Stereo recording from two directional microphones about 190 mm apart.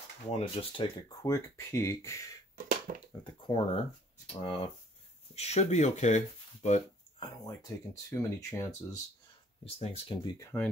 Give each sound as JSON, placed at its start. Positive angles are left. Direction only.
{"t": 0.3, "sound": "speech", "side_deg": 30}
{"t": 2.9, "sound": "speech", "side_deg": -40}
{"t": 3.4, "sound": "speech", "side_deg": 25}
{"t": 7.2, "sound": "speech", "side_deg": 20}
{"t": 9.7, "sound": "speech", "side_deg": 30}
{"t": 10.4, "sound": "speech", "side_deg": 10}